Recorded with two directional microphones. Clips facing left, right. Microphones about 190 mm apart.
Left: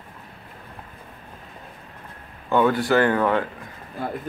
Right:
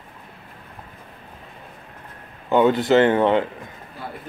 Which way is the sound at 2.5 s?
20° right (ahead or behind).